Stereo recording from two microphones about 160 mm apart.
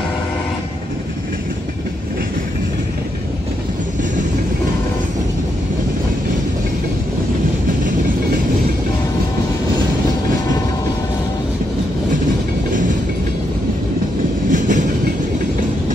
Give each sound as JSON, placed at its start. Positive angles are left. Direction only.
{"t": 14.5, "sound": "train", "side_deg": -50}